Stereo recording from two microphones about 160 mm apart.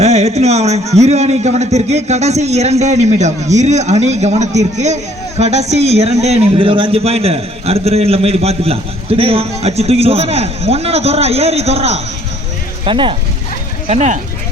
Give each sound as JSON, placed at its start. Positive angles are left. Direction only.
{"t": 0.0, "sound": "a man's voice", "side_deg": -45}
{"t": 13.8, "sound": "a man's voice", "side_deg": -45}